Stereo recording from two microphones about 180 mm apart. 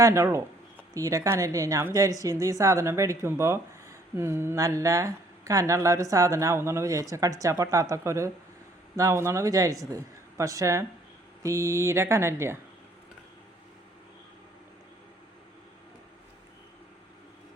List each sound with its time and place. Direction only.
0.0 s speech: 15° right (ahead or behind)